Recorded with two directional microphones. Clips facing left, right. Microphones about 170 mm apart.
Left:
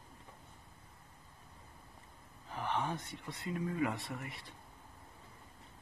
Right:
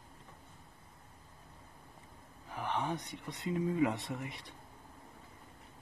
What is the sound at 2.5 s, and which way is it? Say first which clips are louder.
Speech: right 1 dB; 15° right (ahead or behind).